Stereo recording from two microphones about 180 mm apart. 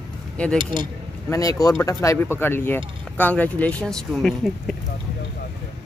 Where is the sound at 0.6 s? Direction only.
25° right (ahead or behind).